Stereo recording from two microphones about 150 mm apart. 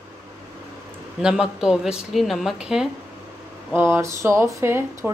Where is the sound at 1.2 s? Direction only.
5° right (ahead or behind).